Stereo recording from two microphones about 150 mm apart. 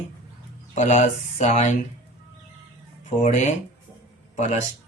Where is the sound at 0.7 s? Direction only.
50° left (ahead or behind).